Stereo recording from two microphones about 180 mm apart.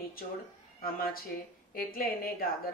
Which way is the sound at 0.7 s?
55° left (ahead or behind).